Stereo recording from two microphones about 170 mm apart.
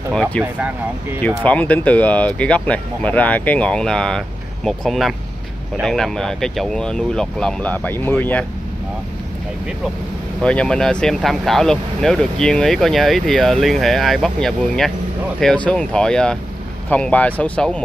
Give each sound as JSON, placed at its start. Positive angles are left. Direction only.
{"t": 0.1, "sound": "speech", "side_deg": 5}
{"t": 0.4, "sound": "speech", "side_deg": -10}
{"t": 1.4, "sound": "speech", "side_deg": 10}
{"t": 10.4, "sound": "speech", "side_deg": 5}